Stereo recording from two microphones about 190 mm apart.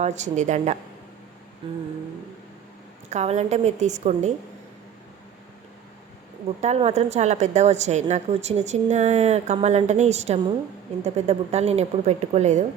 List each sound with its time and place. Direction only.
0.0 s a woman's voice: 40° right (ahead or behind)
3.1 s a woman's voice: 35° right (ahead or behind)
6.6 s a woman's voice: 35° right (ahead or behind)